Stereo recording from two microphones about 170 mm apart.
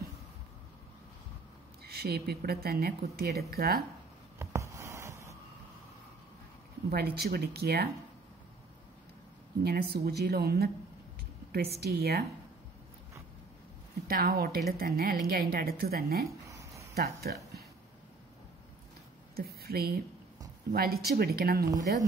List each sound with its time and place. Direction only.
1.9 s a woman's voice: 70° right (ahead or behind)
4.4 s writing: 20° right (ahead or behind)
6.9 s a woman's voice: 65° right (ahead or behind)
9.6 s a woman's voice: 65° right (ahead or behind)
14.0 s a woman's voice: 60° right (ahead or behind)
16.3 s a sound: 20° right (ahead or behind)
16.9 s a woman's voice: 65° right (ahead or behind)
19.3 s a woman's voice: 65° right (ahead or behind)